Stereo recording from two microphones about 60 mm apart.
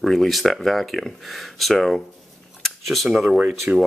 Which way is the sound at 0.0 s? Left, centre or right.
Centre.